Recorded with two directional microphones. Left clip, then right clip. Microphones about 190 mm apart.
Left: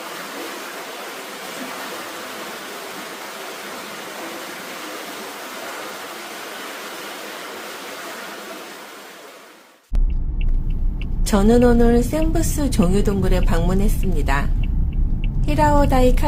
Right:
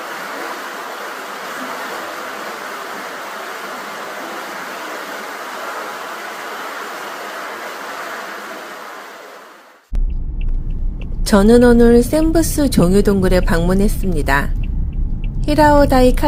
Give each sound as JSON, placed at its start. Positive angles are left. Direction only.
{"t": 11.3, "sound": "a woman's voice", "side_deg": -30}